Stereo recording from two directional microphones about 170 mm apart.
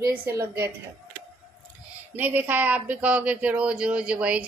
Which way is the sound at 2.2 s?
10° right (ahead or behind).